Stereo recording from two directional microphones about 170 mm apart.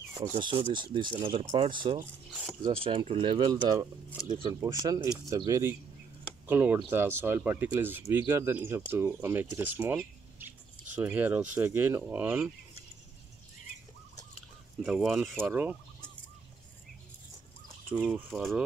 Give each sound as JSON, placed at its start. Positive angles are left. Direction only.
{"t": 0.4, "sound": "speech", "side_deg": -30}
{"t": 11.0, "sound": "speech", "side_deg": -10}
{"t": 14.8, "sound": "speech", "side_deg": -5}
{"t": 17.8, "sound": "speech", "side_deg": 0}